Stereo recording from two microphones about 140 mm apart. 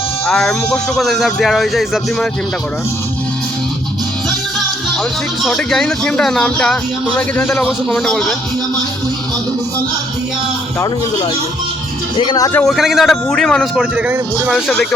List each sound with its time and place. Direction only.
0.3 s a man's voice: 5° left (ahead or behind)
5.4 s a man's voice: centre (ahead or behind)
12.1 s speech: 35° left (ahead or behind)
12.5 s a man's voice: centre (ahead or behind)
13.7 s speech: 10° right (ahead or behind)
14.5 s a man's voice: 5° left (ahead or behind)